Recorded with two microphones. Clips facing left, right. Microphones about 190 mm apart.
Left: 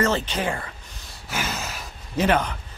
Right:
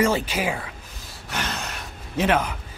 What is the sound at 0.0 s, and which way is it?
Gasp, 10° right (ahead or behind).